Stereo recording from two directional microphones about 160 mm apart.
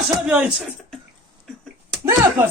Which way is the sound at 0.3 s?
5° right (ahead or behind).